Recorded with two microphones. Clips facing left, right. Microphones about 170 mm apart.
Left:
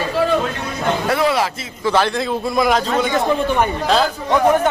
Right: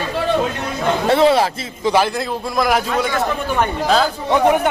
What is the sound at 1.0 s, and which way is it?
Speech, 25° right (ahead or behind).